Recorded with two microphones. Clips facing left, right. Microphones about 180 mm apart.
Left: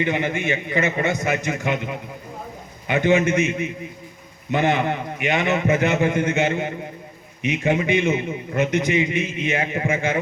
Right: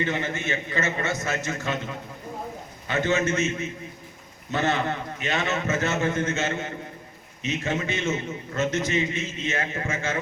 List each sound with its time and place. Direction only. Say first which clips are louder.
0.0 s a man's voice: left 5 dB; 15° left (ahead or behind)